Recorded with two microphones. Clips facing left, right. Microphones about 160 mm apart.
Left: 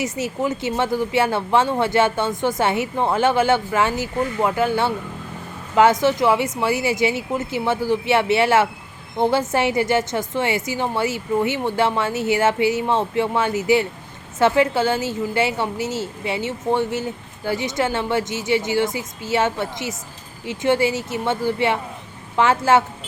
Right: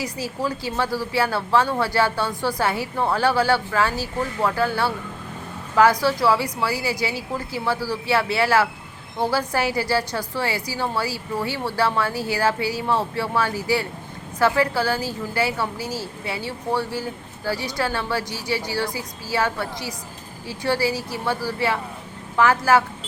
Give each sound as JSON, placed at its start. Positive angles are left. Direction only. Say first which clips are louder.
{"t": 0.0, "sound": "a woman's voice", "louder": "left 4 dB", "side_deg": 20}